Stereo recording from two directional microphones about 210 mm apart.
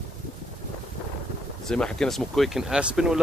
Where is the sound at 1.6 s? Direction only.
5° left (ahead or behind).